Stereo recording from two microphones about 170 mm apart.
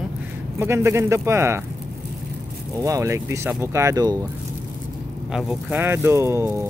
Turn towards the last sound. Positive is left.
turn(degrees=-15)  # may be behind; listen again after turning